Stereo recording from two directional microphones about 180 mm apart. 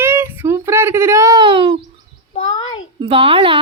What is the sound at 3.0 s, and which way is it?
Speech, 30° right (ahead or behind).